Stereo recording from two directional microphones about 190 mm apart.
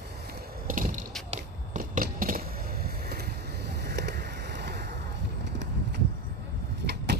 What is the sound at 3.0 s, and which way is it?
Vehicle, 55° right (ahead or behind).